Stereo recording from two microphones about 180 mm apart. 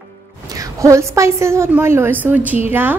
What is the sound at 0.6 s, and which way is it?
A woman's voice, 15° right (ahead or behind).